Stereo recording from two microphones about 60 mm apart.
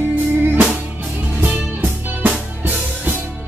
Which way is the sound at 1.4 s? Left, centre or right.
Right.